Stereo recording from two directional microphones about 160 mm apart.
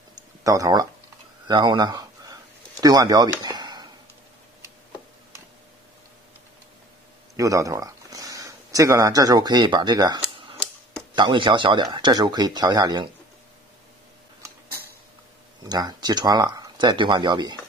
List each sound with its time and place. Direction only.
0.4 s speech: 20° right (ahead or behind)
7.3 s speech: 20° right (ahead or behind)
10.3 s a sound: 35° right (ahead or behind)
11.1 s speech: 30° right (ahead or behind)
15.6 s speech: 25° right (ahead or behind)